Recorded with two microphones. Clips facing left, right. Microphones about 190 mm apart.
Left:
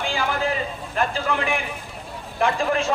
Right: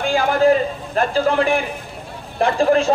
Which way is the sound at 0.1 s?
40° right (ahead or behind).